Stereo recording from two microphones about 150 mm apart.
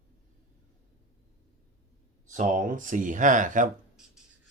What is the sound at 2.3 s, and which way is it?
Speech, 60° right (ahead or behind).